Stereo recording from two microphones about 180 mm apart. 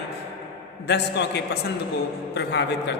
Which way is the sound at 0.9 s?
70° left (ahead or behind).